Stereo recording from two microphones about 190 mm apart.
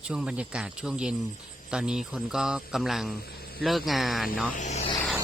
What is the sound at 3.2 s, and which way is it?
Snake, 55° left (ahead or behind).